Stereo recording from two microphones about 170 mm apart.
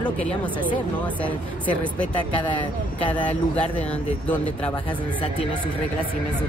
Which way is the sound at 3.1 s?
10° left (ahead or behind).